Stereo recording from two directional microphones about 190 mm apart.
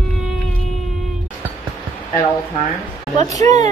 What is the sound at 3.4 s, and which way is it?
Speech, 35° right (ahead or behind).